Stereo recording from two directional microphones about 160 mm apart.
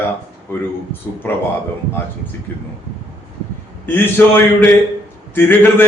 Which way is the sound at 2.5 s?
15° left (ahead or behind).